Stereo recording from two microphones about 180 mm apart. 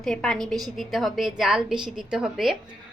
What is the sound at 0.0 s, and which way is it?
A woman's voice, 5° left (ahead or behind).